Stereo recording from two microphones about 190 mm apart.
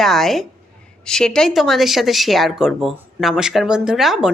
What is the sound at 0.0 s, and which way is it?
A woman's voice, centre (ahead or behind).